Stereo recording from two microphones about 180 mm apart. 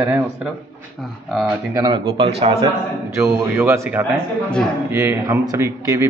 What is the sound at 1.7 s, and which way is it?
Speech, 25° right (ahead or behind).